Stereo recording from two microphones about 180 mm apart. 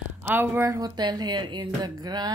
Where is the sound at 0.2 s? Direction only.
10° right (ahead or behind).